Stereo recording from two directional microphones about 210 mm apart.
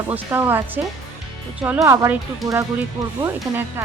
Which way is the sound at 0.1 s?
10° right (ahead or behind).